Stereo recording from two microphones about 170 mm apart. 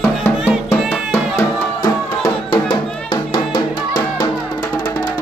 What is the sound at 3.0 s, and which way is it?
Music, 25° left (ahead or behind).